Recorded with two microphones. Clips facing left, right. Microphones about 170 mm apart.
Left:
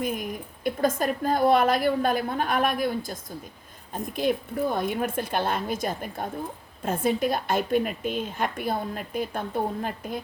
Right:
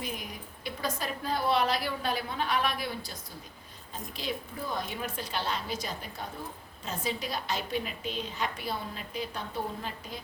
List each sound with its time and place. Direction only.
0.0 s a woman's voice: 50° left (ahead or behind)